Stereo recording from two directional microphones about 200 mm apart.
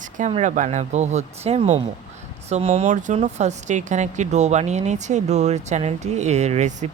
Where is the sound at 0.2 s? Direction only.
35° right (ahead or behind).